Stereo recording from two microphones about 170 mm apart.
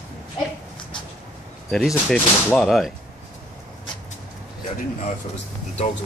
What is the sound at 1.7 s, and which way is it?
Speech, 5° left (ahead or behind).